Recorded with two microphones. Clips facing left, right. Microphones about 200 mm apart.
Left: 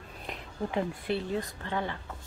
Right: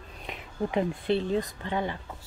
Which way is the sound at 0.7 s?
20° right (ahead or behind).